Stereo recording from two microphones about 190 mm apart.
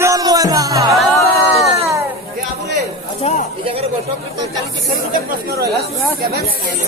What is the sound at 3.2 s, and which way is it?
Speech, 35° left (ahead or behind).